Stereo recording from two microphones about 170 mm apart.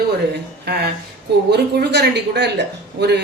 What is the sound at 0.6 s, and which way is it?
Speech, 70° right (ahead or behind).